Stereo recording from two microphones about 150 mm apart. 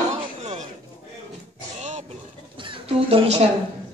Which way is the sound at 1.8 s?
50° right (ahead or behind).